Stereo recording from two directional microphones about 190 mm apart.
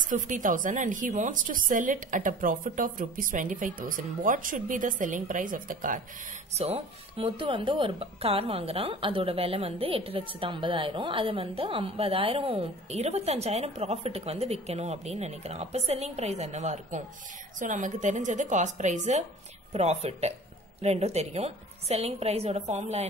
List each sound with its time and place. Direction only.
0.1 s a woman's voice: 45° right (ahead or behind)
6.5 s speech: 35° right (ahead or behind)